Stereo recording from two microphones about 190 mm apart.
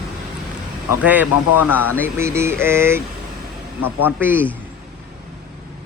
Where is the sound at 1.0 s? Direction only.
10° right (ahead or behind).